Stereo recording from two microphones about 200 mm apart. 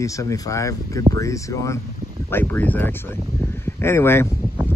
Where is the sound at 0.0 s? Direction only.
15° left (ahead or behind).